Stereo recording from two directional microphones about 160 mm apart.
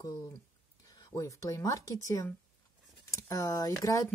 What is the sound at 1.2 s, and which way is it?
Speech, 20° left (ahead or behind).